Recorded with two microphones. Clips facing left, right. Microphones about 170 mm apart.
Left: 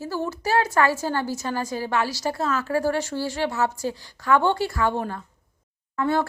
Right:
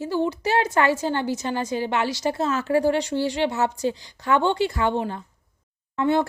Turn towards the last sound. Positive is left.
turn(degrees=-20)  # may be behind; listen again after turning